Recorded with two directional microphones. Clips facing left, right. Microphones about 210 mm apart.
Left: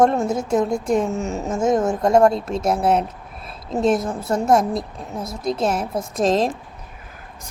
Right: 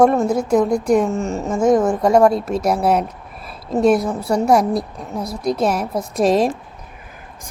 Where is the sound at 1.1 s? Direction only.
Centre (ahead or behind).